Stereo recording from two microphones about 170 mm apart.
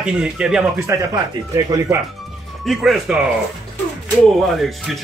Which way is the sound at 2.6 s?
Centre (ahead or behind).